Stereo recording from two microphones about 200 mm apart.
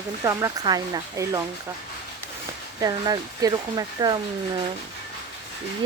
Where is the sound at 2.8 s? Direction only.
20° right (ahead or behind).